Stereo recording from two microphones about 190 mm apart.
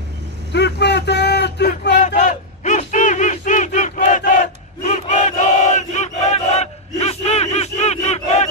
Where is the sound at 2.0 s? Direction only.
40° left (ahead or behind).